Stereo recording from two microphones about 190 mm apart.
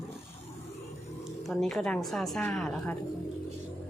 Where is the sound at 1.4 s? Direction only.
5° left (ahead or behind).